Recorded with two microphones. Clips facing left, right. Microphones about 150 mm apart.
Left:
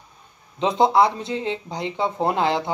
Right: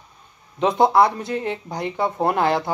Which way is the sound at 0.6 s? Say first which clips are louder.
Right 1 dB; 20° left (ahead or behind).